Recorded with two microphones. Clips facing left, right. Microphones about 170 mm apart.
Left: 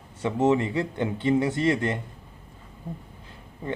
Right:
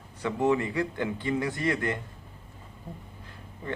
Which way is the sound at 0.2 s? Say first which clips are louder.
Left 3 dB; 20° left (ahead or behind).